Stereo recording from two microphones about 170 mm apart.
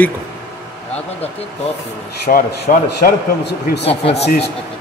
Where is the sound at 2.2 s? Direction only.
70° left (ahead or behind).